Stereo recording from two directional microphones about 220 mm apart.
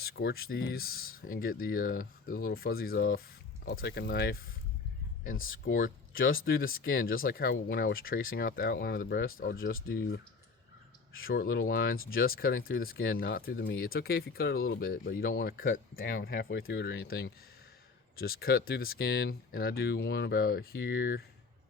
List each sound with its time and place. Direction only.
0.0 s speech: 45° left (ahead or behind)
5.6 s speech: 40° left (ahead or behind)
11.4 s speech: 55° left (ahead or behind)